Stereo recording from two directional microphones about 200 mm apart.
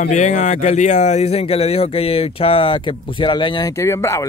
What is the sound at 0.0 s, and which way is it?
A man's voice, 35° left (ahead or behind).